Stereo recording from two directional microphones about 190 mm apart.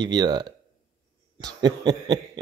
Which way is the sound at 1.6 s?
20° right (ahead or behind).